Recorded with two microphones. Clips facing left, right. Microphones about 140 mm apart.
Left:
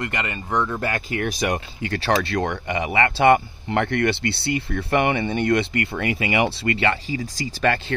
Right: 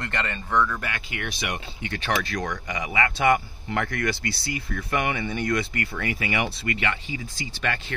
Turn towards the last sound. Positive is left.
turn(degrees=35)  # may be behind; listen again after turning